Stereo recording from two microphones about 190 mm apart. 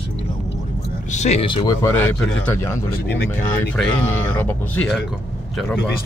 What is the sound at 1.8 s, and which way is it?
Speech, 10° left (ahead or behind).